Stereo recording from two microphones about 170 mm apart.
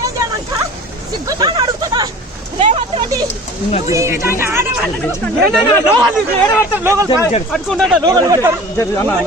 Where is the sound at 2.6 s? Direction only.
35° right (ahead or behind).